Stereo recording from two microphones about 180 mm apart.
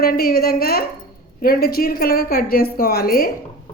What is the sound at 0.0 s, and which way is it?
A woman's voice, 55° left (ahead or behind).